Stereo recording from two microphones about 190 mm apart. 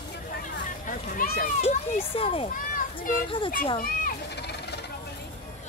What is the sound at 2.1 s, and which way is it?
Speech, 30° left (ahead or behind).